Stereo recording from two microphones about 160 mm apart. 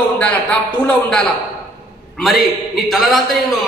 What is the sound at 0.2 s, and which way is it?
A man's voice, 10° left (ahead or behind).